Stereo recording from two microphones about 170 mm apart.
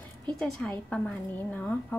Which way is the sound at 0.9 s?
5° left (ahead or behind).